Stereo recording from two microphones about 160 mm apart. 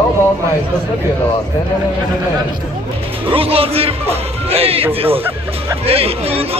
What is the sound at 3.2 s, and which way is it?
Speech, 35° right (ahead or behind).